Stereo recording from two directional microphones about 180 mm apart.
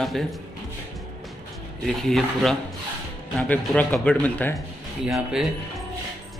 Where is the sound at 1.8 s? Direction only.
Centre (ahead or behind).